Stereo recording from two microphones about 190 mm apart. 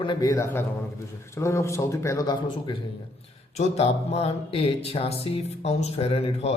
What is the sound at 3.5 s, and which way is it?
Speech, 35° left (ahead or behind).